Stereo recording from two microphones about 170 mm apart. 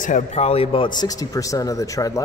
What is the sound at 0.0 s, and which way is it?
A man's voice, 45° left (ahead or behind).